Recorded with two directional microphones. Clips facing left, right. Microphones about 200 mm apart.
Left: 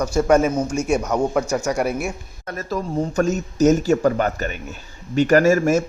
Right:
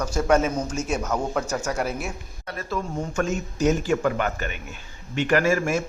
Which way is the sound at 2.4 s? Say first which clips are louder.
Left 4 dB; 45° left (ahead or behind).